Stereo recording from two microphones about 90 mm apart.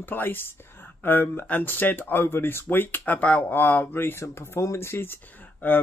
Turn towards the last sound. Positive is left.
turn(degrees=20)  # may be behind; listen again after turning